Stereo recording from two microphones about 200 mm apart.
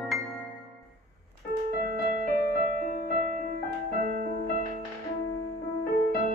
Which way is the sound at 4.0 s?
40° right (ahead or behind).